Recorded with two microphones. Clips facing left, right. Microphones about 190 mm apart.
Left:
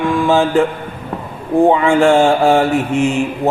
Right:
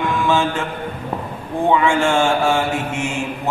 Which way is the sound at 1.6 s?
35° left (ahead or behind).